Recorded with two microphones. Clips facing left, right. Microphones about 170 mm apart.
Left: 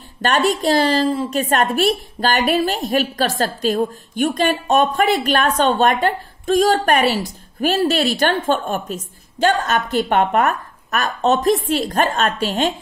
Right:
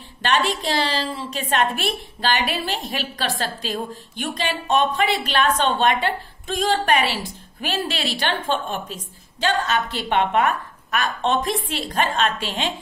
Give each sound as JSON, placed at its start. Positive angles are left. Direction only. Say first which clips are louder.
{"t": 0.2, "sound": "a woman's voice", "louder": "left 5 dB", "side_deg": 45}